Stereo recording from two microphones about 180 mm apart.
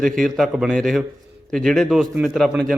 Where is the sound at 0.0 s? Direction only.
Centre (ahead or behind).